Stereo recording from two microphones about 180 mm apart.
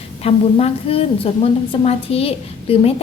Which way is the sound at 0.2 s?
35° left (ahead or behind).